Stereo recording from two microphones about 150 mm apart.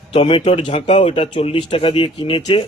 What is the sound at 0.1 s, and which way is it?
Speech, 40° left (ahead or behind).